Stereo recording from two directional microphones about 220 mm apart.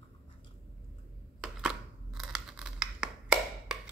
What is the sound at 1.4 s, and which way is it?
Scissors, 5° right (ahead or behind).